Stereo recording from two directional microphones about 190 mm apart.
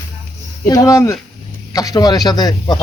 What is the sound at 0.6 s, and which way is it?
Speech, 15° left (ahead or behind).